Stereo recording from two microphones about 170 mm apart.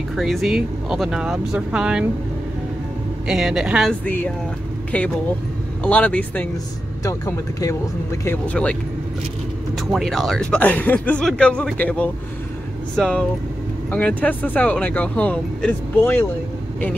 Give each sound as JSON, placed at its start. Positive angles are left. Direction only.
{"t": 0.1, "sound": "speech", "side_deg": 0}
{"t": 3.3, "sound": "speech", "side_deg": -5}
{"t": 4.0, "sound": "speech", "side_deg": 10}
{"t": 9.8, "sound": "speech", "side_deg": 0}